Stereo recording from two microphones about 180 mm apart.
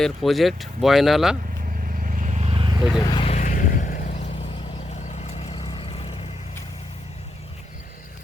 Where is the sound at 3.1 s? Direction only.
30° left (ahead or behind).